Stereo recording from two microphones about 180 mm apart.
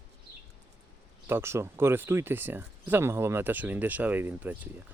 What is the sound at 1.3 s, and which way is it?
Speech, 15° right (ahead or behind).